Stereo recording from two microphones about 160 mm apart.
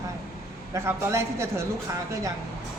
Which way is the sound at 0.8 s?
15° right (ahead or behind).